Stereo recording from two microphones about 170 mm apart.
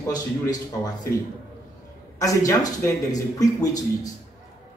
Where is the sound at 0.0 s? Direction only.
20° left (ahead or behind).